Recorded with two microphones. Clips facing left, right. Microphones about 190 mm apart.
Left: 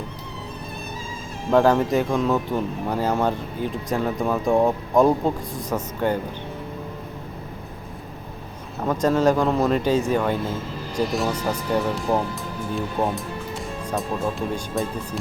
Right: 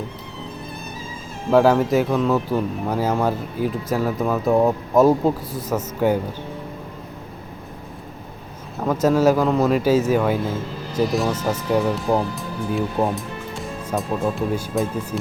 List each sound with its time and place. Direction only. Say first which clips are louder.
1.5 s speech: right 2 dB; 5° right (ahead or behind)
8.8 s speech: right 2 dB; 5° right (ahead or behind)